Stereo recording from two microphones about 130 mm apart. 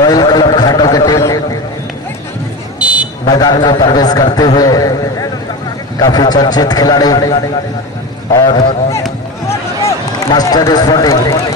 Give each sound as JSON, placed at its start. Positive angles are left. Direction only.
{"t": 0.0, "sound": "a sound", "side_deg": 30}
{"t": 2.8, "sound": "buzzer", "side_deg": -10}
{"t": 3.3, "sound": "a man's voice", "side_deg": 30}
{"t": 9.5, "sound": "run", "side_deg": 25}